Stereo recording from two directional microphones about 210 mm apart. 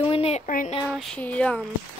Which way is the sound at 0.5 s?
40° left (ahead or behind).